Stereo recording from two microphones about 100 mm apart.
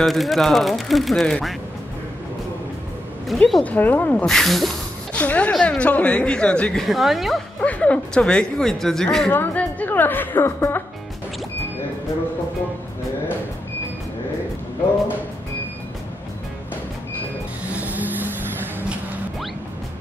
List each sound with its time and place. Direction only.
0.0 s speech: centre (ahead or behind)
3.3 s speech: centre (ahead or behind)
3.6 s a woman's voice: 15° left (ahead or behind)
5.1 s a woman's voice: 15° left (ahead or behind)
7.6 s a woman's voice: 10° left (ahead or behind)
9.3 s a woman's voice: 15° left (ahead or behind)
17.6 s vehicle: 15° right (ahead or behind)